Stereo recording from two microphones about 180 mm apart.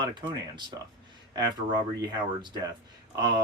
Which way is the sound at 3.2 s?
25° right (ahead or behind).